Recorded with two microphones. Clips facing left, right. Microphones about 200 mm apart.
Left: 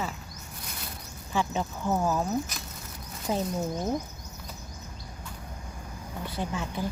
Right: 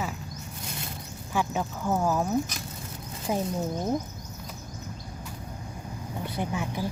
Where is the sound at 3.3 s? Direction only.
10° right (ahead or behind).